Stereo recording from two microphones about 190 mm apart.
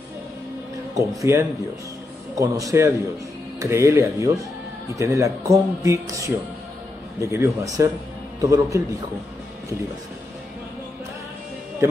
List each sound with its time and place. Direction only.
0.9 s a man's voice: 15° right (ahead or behind)